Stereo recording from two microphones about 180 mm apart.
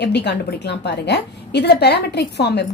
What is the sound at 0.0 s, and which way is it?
A woman's voice, 70° left (ahead or behind).